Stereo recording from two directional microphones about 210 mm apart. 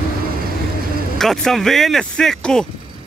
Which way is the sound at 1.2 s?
Centre (ahead or behind).